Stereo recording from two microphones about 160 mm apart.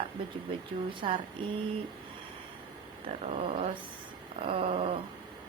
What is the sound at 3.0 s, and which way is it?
A woman's voice, 40° right (ahead or behind).